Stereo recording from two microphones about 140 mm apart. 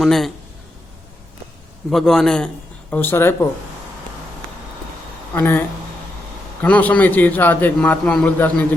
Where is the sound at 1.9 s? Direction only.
5° left (ahead or behind).